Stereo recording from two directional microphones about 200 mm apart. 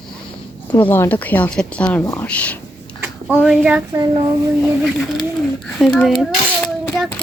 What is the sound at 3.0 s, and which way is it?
Speech, 5° right (ahead or behind).